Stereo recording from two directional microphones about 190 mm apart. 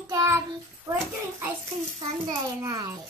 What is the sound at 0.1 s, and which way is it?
Child singing, 15° right (ahead or behind).